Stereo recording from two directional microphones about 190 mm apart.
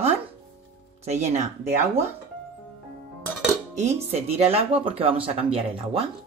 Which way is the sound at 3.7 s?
35° right (ahead or behind).